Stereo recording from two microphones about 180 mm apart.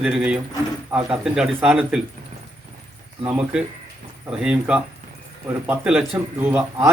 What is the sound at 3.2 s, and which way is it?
Speech, 5° right (ahead or behind).